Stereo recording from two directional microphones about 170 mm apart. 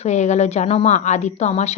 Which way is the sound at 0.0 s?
40° left (ahead or behind).